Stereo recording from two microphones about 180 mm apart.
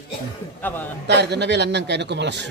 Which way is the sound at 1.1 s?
70° right (ahead or behind).